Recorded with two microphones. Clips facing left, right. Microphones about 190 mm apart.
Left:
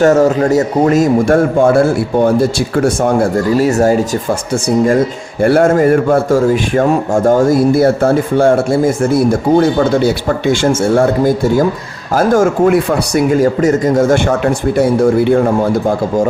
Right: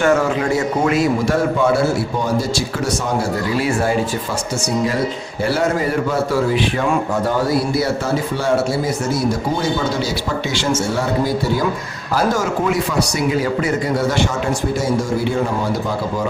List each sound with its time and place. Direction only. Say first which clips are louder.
0.0 s speech: left 7 dB; 40° left (ahead or behind)
5.4 s speech: left 9 dB; 55° left (ahead or behind)
14.8 s speech: left 9 dB; 60° left (ahead or behind)